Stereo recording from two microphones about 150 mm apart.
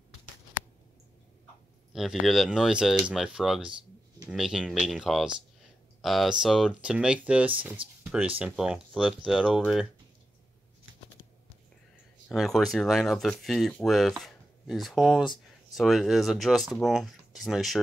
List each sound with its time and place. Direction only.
2.0 s speech: centre (ahead or behind)
12.3 s speech: centre (ahead or behind)